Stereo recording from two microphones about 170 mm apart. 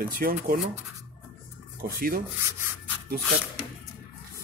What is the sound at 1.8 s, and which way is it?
Speech, 60° right (ahead or behind).